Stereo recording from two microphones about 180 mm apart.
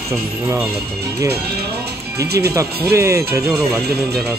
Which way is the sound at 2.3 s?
15° right (ahead or behind).